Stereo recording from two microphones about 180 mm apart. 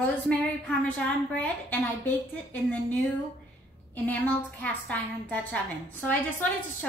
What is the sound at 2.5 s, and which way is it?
Speech, 10° left (ahead or behind).